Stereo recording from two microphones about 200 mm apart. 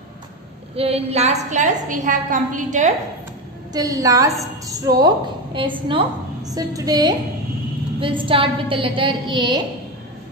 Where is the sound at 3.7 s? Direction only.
15° right (ahead or behind).